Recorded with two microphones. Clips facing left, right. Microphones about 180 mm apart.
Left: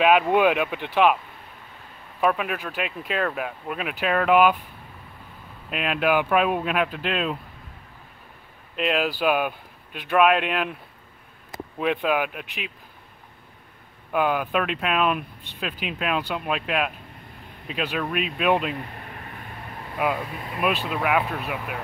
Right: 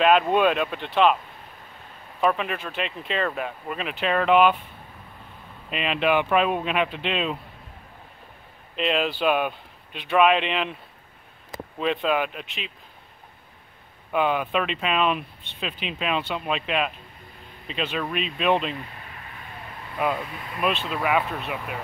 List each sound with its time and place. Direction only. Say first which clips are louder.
0.0 s speech: left 1 dB; 10° left (ahead or behind)
2.1 s speech: even; 5° left (ahead or behind)
5.7 s speech: even; 5° left (ahead or behind)
8.7 s speech: even; centre (ahead or behind)
11.8 s speech: even; 5° left (ahead or behind)
14.1 s speech: even; 5° left (ahead or behind)
18.8 s a sound: left 3 dB; 50° left (ahead or behind)
20.0 s speech: left 1 dB; 5° left (ahead or behind)